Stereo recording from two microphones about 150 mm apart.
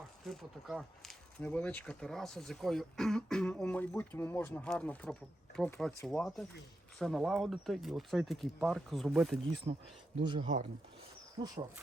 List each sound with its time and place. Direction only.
0.3 s speech: centre (ahead or behind)
9.7 s speech: 40° right (ahead or behind)